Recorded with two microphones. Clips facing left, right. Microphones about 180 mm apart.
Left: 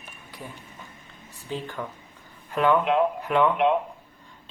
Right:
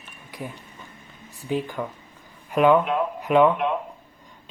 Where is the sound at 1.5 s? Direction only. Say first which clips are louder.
Right 6 dB; 15° right (ahead or behind).